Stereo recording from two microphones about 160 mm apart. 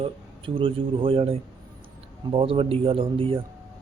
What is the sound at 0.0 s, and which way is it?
Speech, 35° right (ahead or behind).